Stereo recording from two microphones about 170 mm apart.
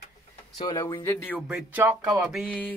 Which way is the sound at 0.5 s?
25° left (ahead or behind).